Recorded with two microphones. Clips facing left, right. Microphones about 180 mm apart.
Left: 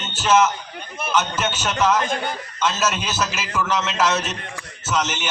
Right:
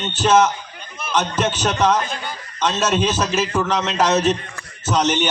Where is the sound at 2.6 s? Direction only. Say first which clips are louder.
Right 4 dB; 35° right (ahead or behind).